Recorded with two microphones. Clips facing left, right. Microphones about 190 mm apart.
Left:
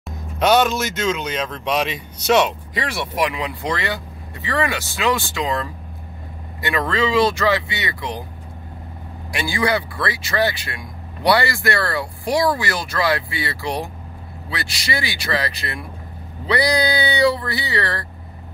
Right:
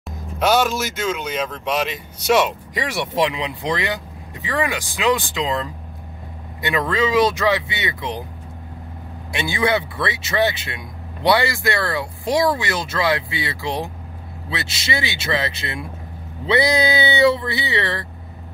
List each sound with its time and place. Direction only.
0.4 s speech: 5° right (ahead or behind); by 8.2 s 20° right (ahead or behind)
9.3 s speech: 20° right (ahead or behind)